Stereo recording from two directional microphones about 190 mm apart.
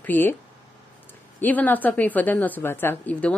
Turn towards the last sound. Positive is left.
turn(degrees=10)  # may be behind; listen again after turning